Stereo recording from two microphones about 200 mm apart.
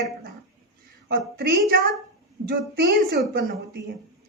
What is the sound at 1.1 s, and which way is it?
Speech, 50° right (ahead or behind).